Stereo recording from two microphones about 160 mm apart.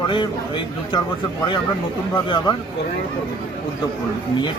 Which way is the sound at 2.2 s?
30° left (ahead or behind).